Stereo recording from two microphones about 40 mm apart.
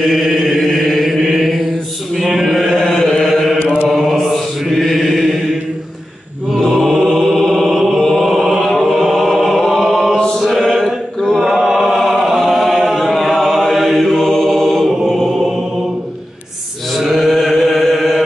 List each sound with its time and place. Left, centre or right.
0.0 s chant: centre
3.5 s mantra: left
3.9 s mantra: centre
6.5 s mantra: centre
8.1 s chant: centre
10.4 s music: centre
11.3 s a sound: centre
12.0 s chant: centre
17.0 s mantra: centre
17.3 s chant: centre